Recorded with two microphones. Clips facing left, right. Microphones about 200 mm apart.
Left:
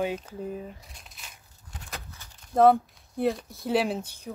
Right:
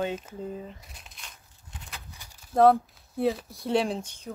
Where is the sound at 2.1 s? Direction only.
15° right (ahead or behind).